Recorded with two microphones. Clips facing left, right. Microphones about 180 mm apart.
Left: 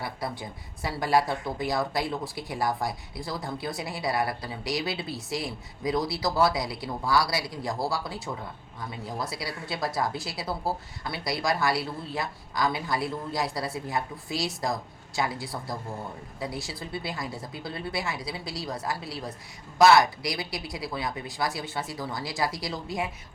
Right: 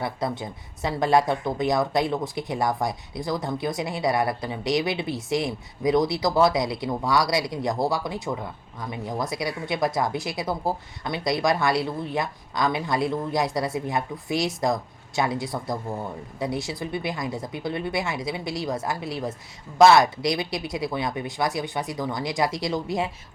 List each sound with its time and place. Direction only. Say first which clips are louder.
0.0 s speech: right 6 dB; 20° right (ahead or behind)